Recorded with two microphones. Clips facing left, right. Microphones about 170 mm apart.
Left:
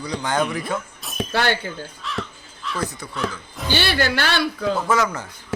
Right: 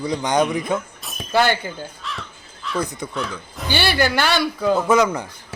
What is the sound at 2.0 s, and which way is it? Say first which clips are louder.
Crow: left 3 dB; centre (ahead or behind).